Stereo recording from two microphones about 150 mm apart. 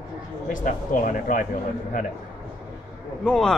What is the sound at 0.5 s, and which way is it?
Speech, 60° left (ahead or behind).